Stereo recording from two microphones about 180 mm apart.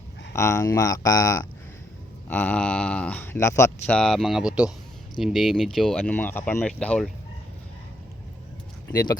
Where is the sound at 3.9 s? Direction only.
Centre (ahead or behind).